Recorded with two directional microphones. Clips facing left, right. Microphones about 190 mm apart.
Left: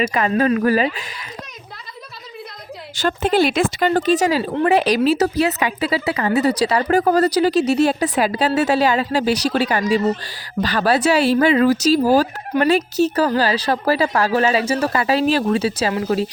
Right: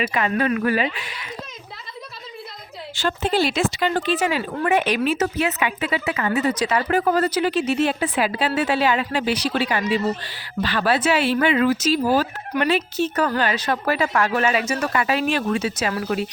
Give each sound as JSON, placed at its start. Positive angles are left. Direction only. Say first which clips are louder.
{"t": 0.0, "sound": "speech", "louder": "left 4 dB", "side_deg": 40}
{"t": 2.9, "sound": "speech", "louder": "left 4 dB", "side_deg": 50}